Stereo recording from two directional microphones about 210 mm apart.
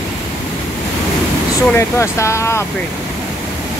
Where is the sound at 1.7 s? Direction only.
15° left (ahead or behind).